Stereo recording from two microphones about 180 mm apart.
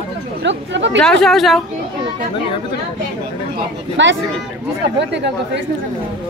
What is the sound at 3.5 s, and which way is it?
Speech, 90° right.